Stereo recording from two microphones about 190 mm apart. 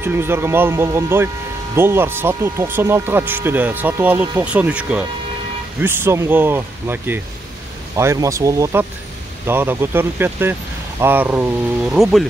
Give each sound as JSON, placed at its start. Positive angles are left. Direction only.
{"t": 0.0, "sound": "speech", "side_deg": -10}